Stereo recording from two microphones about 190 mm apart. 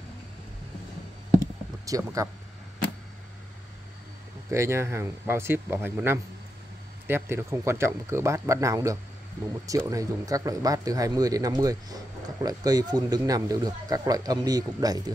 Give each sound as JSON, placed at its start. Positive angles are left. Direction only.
{"t": 1.9, "sound": "speech", "side_deg": -20}
{"t": 4.5, "sound": "speech", "side_deg": -15}